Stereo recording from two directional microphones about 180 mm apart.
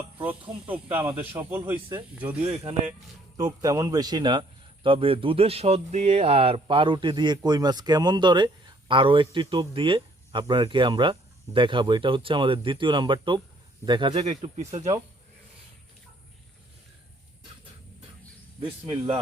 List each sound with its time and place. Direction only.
1.4 s speech: 10° right (ahead or behind)
2.5 s speech: 35° right (ahead or behind)
3.3 s a man's voice: 20° right (ahead or behind); by 14.9 s 35° right (ahead or behind)
18.6 s a man's voice: 30° right (ahead or behind)